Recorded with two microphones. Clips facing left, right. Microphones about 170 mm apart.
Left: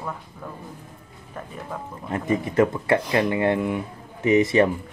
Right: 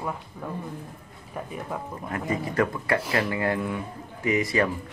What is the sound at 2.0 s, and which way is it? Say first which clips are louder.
Speech: left 5 dB; 25° left (ahead or behind).